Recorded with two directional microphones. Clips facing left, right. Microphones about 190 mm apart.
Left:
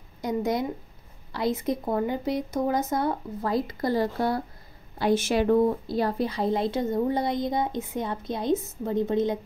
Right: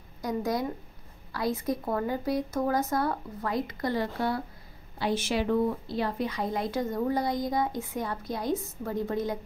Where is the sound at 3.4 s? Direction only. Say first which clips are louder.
Left 4 dB; 30° left (ahead or behind).